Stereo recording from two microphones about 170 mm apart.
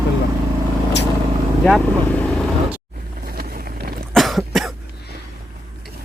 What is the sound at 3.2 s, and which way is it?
Vehicle, 60° right (ahead or behind).